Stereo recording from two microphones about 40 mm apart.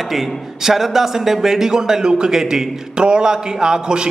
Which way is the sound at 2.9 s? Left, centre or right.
Right.